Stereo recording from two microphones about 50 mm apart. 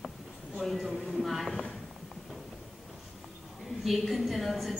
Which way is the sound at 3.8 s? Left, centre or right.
Centre.